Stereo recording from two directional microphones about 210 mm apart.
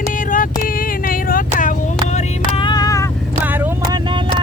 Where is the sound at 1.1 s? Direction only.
40° left (ahead or behind).